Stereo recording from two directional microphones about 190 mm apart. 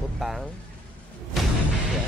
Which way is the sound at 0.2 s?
Centre (ahead or behind).